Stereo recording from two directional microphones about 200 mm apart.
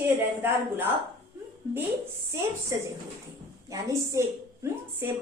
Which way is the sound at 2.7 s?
15° right (ahead or behind).